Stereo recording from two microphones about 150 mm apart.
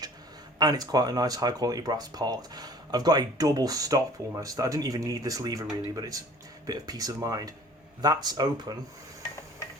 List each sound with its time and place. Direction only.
0.6 s speech: 25° right (ahead or behind)